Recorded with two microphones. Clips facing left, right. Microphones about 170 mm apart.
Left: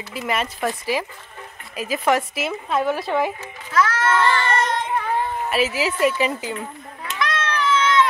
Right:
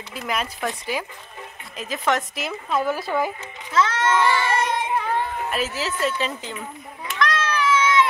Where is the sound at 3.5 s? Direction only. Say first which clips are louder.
Even; 20° right (ahead or behind).